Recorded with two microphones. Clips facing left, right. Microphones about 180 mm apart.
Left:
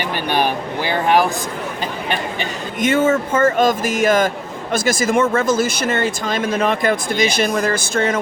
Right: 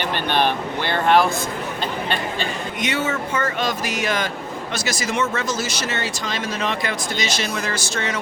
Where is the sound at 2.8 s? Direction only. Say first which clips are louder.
Left 9 dB; 50° left (ahead or behind).